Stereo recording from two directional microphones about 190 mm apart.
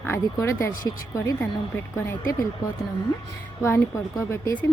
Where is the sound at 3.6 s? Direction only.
15° left (ahead or behind).